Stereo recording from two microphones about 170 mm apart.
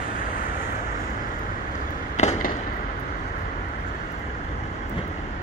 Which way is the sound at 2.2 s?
50° left (ahead or behind).